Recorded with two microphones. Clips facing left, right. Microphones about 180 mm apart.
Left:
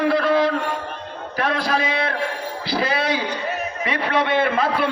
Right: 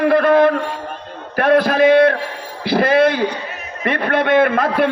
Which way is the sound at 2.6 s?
55° right (ahead or behind).